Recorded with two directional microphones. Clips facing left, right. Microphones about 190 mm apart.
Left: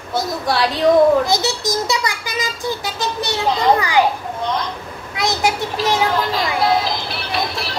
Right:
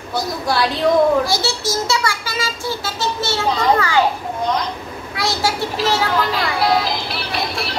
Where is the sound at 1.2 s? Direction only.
20° left (ahead or behind).